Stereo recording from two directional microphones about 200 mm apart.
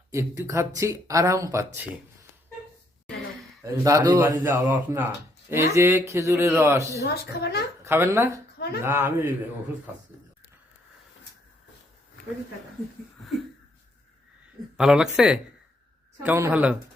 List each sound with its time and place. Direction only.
0.1 s speech: 15° right (ahead or behind)
3.6 s speech: 15° right (ahead or behind)
7.0 s a woman's voice: 50° left (ahead or behind)
7.9 s speech: 10° right (ahead or behind)
14.8 s speech: 5° right (ahead or behind)